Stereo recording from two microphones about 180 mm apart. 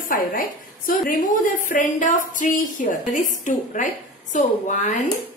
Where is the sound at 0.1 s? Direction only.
50° left (ahead or behind).